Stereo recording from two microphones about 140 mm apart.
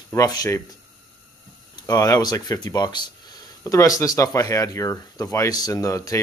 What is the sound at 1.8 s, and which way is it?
Speech, 25° left (ahead or behind).